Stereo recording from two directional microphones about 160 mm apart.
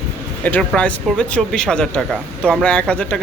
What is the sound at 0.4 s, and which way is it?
Speech, 10° left (ahead or behind).